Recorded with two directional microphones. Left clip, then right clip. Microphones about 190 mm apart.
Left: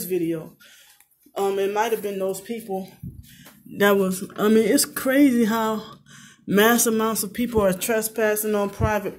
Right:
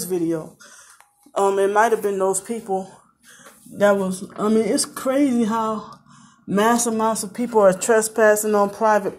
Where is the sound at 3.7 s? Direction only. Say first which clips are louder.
Right 2 dB; 50° left (ahead or behind).